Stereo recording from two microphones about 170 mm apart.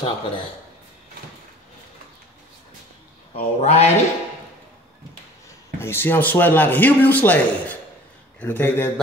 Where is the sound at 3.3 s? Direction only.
40° left (ahead or behind).